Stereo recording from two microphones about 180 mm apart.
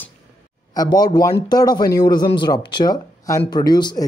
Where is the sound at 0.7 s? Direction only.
20° left (ahead or behind).